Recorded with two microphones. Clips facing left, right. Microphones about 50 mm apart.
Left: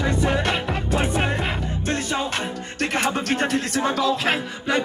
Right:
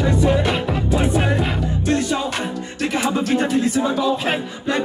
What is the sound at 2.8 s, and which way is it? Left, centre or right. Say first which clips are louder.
Music: right 2 dB; left.